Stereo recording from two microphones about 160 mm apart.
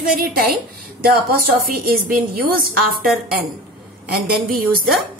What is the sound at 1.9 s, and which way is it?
Speech, 65° right (ahead or behind).